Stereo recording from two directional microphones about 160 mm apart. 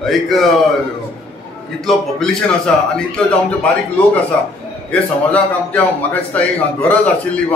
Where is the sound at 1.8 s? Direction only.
Centre (ahead or behind).